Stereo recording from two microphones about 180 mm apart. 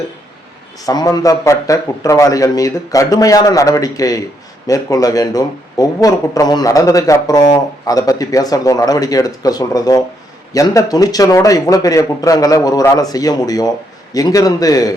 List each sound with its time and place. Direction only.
0.9 s speech: 20° left (ahead or behind)